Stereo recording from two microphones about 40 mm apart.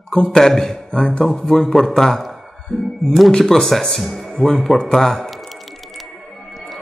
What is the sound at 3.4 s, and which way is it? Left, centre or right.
A man's voice, centre.